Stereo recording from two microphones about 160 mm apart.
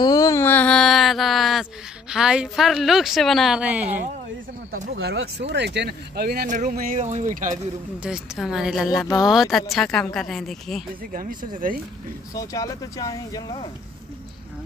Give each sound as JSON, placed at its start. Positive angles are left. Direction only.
{"t": 0.0, "sound": "a sound", "side_deg": 20}
{"t": 5.0, "sound": "speech", "side_deg": -90}
{"t": 6.4, "sound": "speech", "side_deg": -50}
{"t": 7.0, "sound": "speech", "side_deg": -50}
{"t": 8.0, "sound": "speech", "side_deg": -5}
{"t": 11.1, "sound": "speech", "side_deg": -60}
{"t": 12.4, "sound": "speech", "side_deg": 20}